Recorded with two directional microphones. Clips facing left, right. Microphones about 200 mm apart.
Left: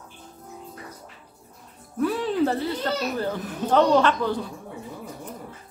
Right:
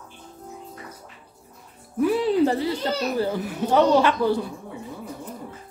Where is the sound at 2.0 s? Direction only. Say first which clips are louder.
Right 3 dB; 10° right (ahead or behind).